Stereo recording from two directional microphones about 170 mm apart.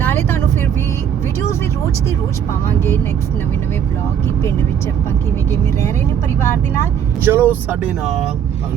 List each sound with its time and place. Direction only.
0.0 s vehicle: 15° left (ahead or behind)
2.6 s speech: 10° left (ahead or behind)
7.3 s speech: 10° right (ahead or behind)